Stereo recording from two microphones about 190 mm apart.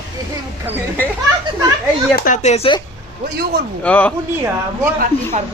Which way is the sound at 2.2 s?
45° left (ahead or behind).